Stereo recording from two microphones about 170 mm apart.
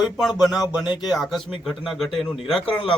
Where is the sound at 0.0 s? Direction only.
Centre (ahead or behind).